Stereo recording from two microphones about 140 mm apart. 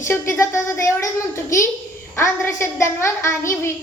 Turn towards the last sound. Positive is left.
turn(degrees=20)  # may be behind; listen again after turning